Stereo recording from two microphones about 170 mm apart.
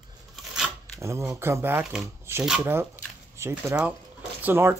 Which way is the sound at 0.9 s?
15° right (ahead or behind).